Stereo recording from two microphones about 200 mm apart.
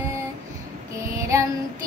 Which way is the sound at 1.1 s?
15° right (ahead or behind).